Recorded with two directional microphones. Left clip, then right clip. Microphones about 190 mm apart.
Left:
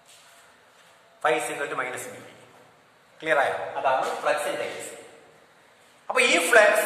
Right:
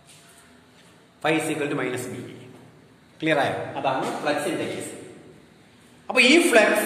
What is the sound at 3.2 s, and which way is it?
Speech, 15° right (ahead or behind).